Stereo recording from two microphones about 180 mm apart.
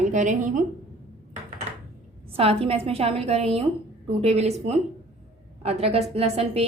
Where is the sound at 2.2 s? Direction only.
35° right (ahead or behind).